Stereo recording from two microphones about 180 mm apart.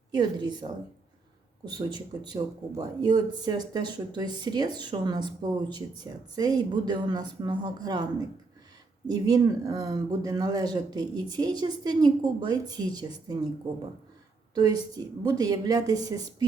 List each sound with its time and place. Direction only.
0.1 s speech: 25° right (ahead or behind)
14.5 s speech: 20° right (ahead or behind)